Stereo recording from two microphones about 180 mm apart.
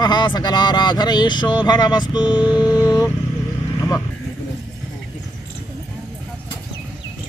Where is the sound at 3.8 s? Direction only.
15° left (ahead or behind).